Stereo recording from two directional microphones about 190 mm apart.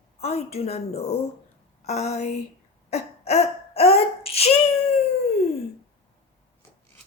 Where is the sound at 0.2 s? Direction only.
35° left (ahead or behind).